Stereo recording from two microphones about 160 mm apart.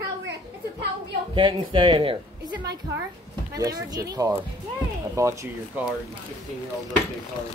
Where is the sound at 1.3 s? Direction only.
30° right (ahead or behind).